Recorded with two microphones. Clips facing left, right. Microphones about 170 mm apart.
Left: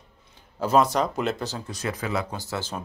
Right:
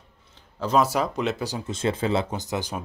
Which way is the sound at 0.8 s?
5° right (ahead or behind).